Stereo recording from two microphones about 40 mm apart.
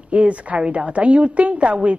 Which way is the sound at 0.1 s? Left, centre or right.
Right.